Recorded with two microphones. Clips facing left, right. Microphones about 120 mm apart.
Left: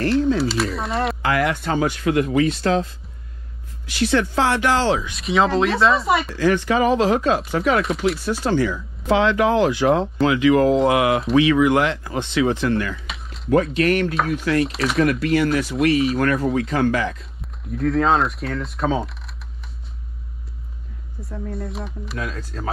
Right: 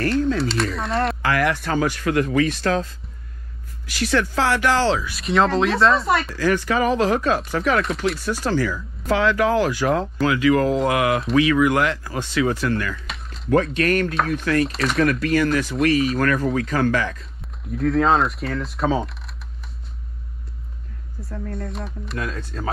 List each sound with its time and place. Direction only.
0.4 s a sound: centre (ahead or behind)
1.2 s speech: 20° left (ahead or behind)
5.1 s speech: centre (ahead or behind)
6.3 s speech: 20° left (ahead or behind)
13.0 s a sound: centre (ahead or behind)
13.5 s speech: 25° left (ahead or behind)
14.7 s speech: centre (ahead or behind)
15.2 s speech: 25° left (ahead or behind)
17.6 s speech: centre (ahead or behind)
21.2 s speech: centre (ahead or behind)